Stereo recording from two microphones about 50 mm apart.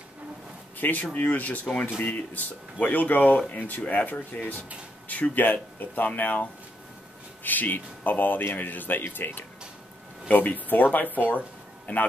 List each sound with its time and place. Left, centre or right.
0.7 s speech: left